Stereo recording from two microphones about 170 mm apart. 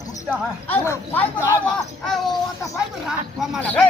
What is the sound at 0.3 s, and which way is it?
A man's voice, 15° left (ahead or behind).